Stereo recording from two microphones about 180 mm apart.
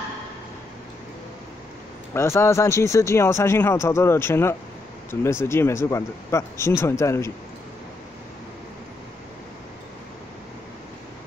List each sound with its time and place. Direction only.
2.1 s speech: 15° left (ahead or behind)